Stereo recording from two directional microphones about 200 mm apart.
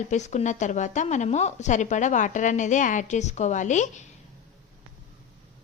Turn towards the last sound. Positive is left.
turn(degrees=35)  # may be behind; listen again after turning